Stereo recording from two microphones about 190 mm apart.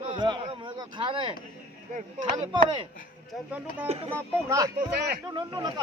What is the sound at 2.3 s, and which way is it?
Speech, 25° right (ahead or behind).